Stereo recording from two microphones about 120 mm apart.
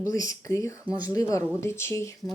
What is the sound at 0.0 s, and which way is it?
Speech, 30° left (ahead or behind).